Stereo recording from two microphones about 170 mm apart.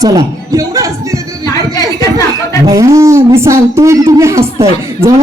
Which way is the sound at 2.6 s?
20° right (ahead or behind).